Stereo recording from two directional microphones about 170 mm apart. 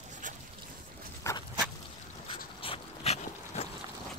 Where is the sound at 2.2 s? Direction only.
30° left (ahead or behind).